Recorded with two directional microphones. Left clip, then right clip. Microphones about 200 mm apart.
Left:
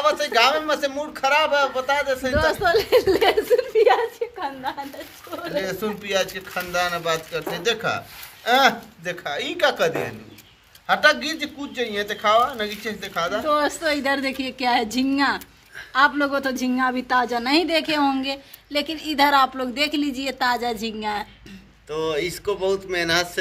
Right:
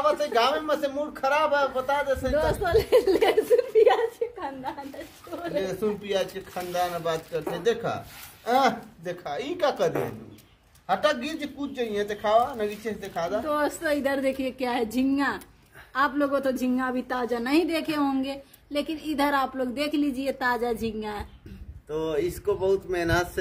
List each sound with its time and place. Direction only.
0.0 s speech: 10° right (ahead or behind)
2.3 s a woman's voice: 10° left (ahead or behind)
5.6 s speech: 15° right (ahead or behind)
8.5 s speech: 15° right (ahead or behind)
13.5 s a woman's voice: 15° left (ahead or behind)
22.0 s speech: 30° right (ahead or behind)